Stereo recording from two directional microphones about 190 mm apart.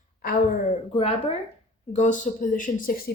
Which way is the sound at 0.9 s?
30° left (ahead or behind).